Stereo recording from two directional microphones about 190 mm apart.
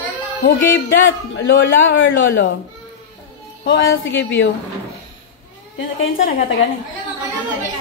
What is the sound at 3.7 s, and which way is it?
Speech, 75° left (ahead or behind).